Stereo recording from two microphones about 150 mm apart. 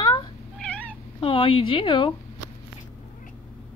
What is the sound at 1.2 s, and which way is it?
Speech, 35° left (ahead or behind).